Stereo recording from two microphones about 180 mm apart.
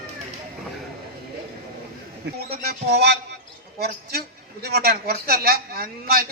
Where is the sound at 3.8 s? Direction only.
60° right (ahead or behind).